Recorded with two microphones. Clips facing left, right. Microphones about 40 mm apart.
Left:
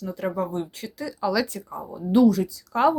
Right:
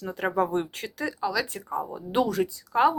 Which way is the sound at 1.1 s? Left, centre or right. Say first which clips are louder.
Left 5 dB; centre.